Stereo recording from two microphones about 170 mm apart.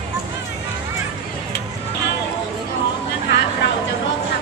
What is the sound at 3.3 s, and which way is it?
Vehicle, 90° left.